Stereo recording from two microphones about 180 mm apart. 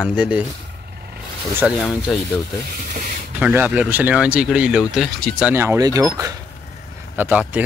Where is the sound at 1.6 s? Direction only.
Centre (ahead or behind).